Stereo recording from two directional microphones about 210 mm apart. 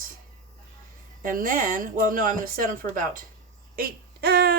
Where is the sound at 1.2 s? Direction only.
40° right (ahead or behind).